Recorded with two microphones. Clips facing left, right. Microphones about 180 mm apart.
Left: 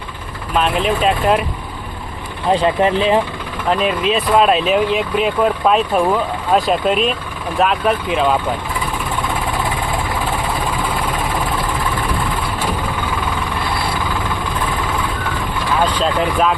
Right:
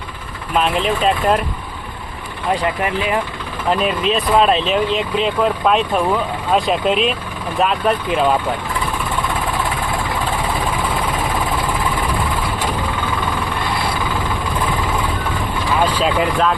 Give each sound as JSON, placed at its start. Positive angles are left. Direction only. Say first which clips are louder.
{"t": 0.5, "sound": "speech", "louder": "left 1 dB", "side_deg": 0}
{"t": 2.5, "sound": "speech", "louder": "left 5 dB", "side_deg": 25}
{"t": 3.7, "sound": "speech", "louder": "left 1 dB", "side_deg": 0}
{"t": 15.8, "sound": "vehicle", "louder": "even", "side_deg": -5}